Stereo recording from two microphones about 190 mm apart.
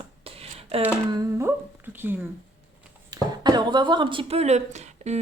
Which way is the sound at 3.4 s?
25° right (ahead or behind).